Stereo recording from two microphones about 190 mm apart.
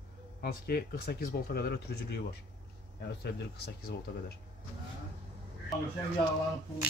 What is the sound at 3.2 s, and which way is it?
Speech, 55° left (ahead or behind).